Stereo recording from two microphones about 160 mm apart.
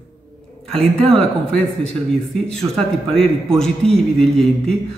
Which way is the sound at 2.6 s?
15° right (ahead or behind).